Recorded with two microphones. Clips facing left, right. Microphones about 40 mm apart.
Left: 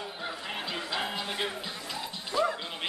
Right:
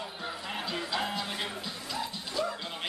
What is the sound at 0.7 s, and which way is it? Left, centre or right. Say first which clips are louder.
Music: right 1 dB; centre.